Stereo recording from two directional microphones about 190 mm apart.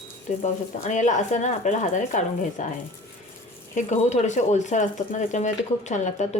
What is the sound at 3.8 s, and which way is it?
Speech, 40° left (ahead or behind).